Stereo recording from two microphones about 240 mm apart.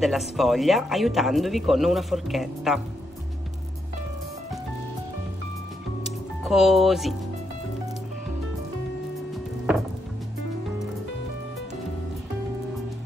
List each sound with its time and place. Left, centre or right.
0.0 s speech: centre
6.4 s speech: centre